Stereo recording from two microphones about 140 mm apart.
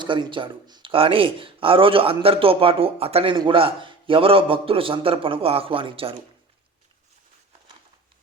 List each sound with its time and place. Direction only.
0.0 s speech: 35° right (ahead or behind)